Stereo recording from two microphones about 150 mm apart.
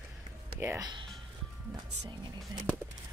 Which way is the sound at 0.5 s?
15° right (ahead or behind).